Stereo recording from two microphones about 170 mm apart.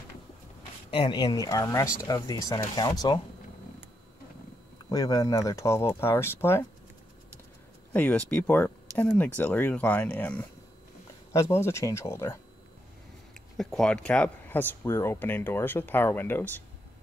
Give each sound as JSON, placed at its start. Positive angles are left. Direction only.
{"t": 0.9, "sound": "speech", "side_deg": 25}
{"t": 4.8, "sound": "speech", "side_deg": 20}
{"t": 7.9, "sound": "speech", "side_deg": 10}
{"t": 13.6, "sound": "speech", "side_deg": 0}